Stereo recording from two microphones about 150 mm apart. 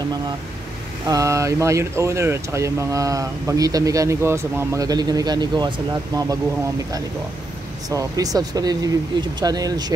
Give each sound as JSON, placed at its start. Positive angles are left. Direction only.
{"t": 1.0, "sound": "speech", "side_deg": -20}
{"t": 7.9, "sound": "speech", "side_deg": -25}